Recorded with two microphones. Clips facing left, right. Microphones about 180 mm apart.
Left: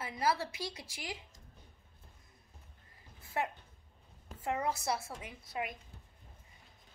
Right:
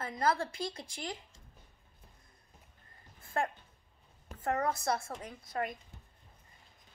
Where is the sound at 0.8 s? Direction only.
5° left (ahead or behind).